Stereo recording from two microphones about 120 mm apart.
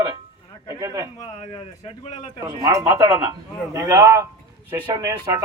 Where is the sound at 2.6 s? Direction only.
30° right (ahead or behind).